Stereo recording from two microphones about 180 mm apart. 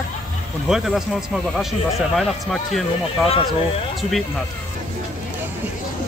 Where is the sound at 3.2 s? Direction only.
35° left (ahead or behind).